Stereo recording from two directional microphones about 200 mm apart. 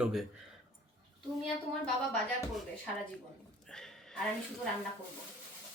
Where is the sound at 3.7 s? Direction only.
5° left (ahead or behind).